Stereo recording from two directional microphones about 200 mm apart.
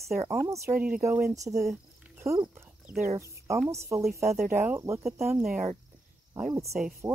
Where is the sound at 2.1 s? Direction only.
15° right (ahead or behind).